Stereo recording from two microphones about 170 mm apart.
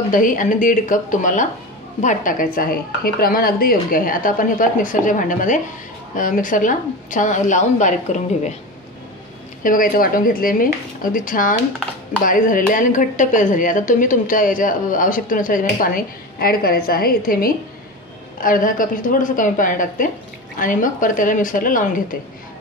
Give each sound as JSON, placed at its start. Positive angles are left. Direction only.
{"t": 0.1, "sound": "a woman's voice", "side_deg": 50}
{"t": 9.6, "sound": "a woman's voice", "side_deg": 55}